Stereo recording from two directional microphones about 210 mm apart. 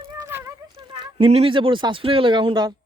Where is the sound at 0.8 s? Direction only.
20° right (ahead or behind).